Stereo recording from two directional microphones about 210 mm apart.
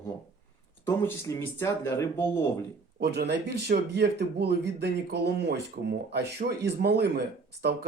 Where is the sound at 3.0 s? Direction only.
50° right (ahead or behind).